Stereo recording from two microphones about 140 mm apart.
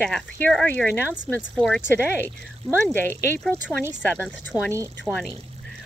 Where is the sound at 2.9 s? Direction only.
15° left (ahead or behind).